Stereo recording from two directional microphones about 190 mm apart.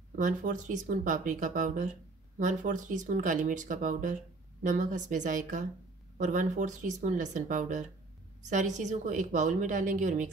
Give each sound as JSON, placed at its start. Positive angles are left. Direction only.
{"t": 0.1, "sound": "a woman's voice", "side_deg": -40}